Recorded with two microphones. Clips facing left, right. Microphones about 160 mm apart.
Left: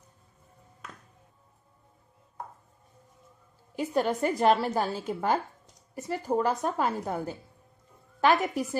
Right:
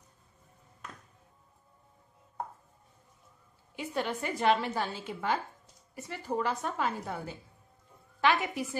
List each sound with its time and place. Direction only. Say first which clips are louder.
3.7 s a woman's voice: left 7 dB; 40° left (ahead or behind)